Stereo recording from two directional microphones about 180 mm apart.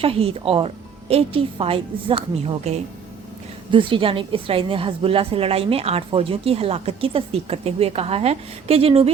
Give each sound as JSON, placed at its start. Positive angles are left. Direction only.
{"t": 0.0, "sound": "a woman's voice", "side_deg": -30}